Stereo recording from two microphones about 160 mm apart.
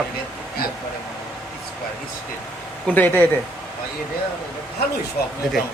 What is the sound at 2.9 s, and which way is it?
Speech, 10° left (ahead or behind).